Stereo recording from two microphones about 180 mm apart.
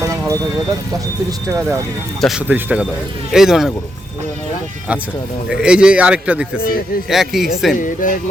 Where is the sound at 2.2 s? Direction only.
5° right (ahead or behind).